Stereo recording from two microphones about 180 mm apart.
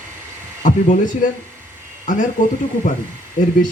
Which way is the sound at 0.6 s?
45° left (ahead or behind).